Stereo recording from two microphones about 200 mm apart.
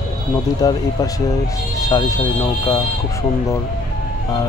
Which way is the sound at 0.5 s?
15° left (ahead or behind).